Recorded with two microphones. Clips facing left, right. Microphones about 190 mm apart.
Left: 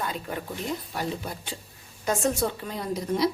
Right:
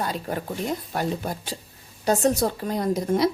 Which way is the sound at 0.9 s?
50° right (ahead or behind).